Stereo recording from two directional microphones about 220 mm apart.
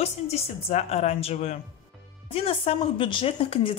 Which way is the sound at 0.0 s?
30° left (ahead or behind).